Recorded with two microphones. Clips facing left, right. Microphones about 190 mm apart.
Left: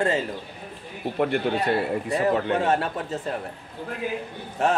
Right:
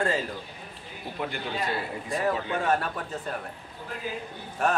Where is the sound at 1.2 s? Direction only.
60° left (ahead or behind).